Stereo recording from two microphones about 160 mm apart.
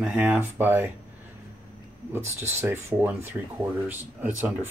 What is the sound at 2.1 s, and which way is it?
Speech, 15° right (ahead or behind).